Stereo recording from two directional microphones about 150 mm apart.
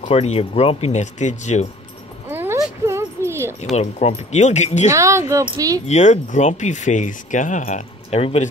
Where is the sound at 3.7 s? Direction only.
50° left (ahead or behind).